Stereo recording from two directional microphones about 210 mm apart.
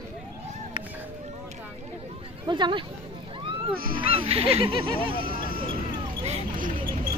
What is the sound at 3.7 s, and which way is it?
Speech, 45° right (ahead or behind).